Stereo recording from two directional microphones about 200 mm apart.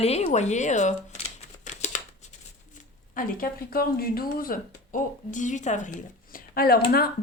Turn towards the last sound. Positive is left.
turn(degrees=50)  # may be behind; listen again after turning